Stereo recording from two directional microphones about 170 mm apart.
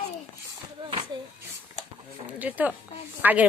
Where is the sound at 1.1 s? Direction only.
25° right (ahead or behind).